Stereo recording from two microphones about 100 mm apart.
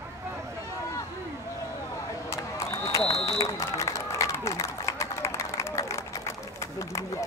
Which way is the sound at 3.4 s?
30° left (ahead or behind).